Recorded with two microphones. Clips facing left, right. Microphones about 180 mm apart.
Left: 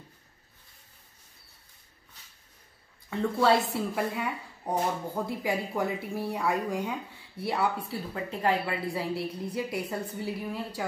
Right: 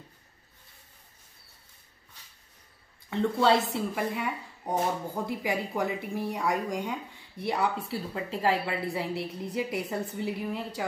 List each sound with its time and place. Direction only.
3.1 s speech: centre (ahead or behind)
8.1 s a woman's voice: 30° right (ahead or behind)
8.5 s speech: centre (ahead or behind)